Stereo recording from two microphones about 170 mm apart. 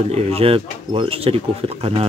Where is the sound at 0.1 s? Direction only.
35° right (ahead or behind).